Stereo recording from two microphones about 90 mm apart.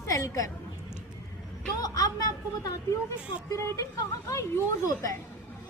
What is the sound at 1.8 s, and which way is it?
Speech, 40° left (ahead or behind).